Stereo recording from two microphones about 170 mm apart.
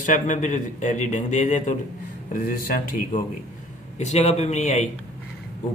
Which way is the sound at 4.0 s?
40° left (ahead or behind).